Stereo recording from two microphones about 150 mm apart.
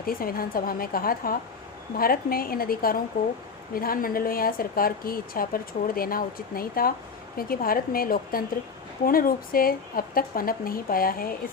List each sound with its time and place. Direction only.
0.0 s speech: 75° left (ahead or behind)